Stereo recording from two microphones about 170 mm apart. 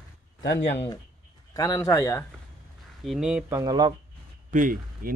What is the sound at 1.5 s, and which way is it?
Speech, 20° left (ahead or behind).